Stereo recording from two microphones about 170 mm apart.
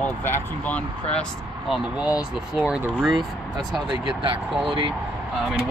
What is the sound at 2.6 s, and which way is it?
Speech, 5° right (ahead or behind).